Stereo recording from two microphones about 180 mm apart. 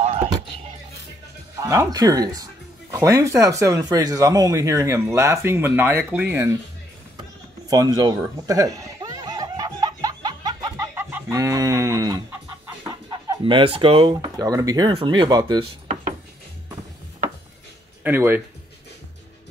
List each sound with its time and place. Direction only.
0.0 s music: 35° right (ahead or behind)
1.6 s speech: 15° right (ahead or behind)
7.7 s chuckle: 20° right (ahead or behind)
14.4 s speech: 20° right (ahead or behind)
18.0 s speech: 10° right (ahead or behind)